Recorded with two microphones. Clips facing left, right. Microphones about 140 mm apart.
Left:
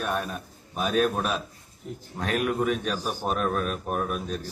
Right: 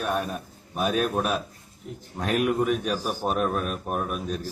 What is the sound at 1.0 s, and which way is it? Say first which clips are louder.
A man's voice: right 1 dB; 5° right (ahead or behind).